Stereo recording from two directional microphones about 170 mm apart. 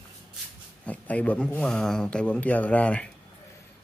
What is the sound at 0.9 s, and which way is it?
Speech, 10° left (ahead or behind).